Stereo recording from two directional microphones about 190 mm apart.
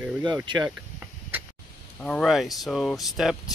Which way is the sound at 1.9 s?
5° left (ahead or behind).